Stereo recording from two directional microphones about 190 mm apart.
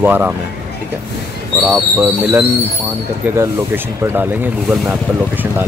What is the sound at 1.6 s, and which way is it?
Speech, 10° right (ahead or behind).